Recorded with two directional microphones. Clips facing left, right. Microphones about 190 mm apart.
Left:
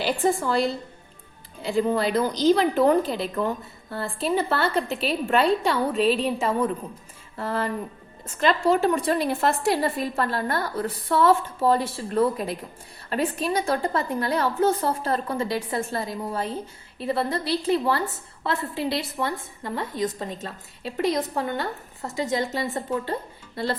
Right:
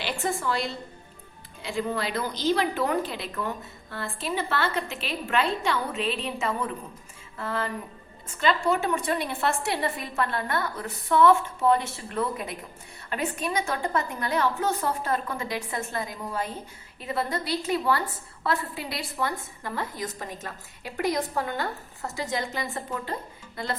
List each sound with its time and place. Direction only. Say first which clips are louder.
0.0 s a woman's voice: left 6 dB; 35° left (ahead or behind)